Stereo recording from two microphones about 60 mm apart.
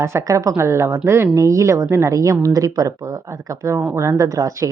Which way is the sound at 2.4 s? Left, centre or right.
Right.